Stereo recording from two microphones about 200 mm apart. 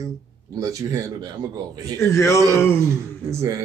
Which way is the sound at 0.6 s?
15° right (ahead or behind).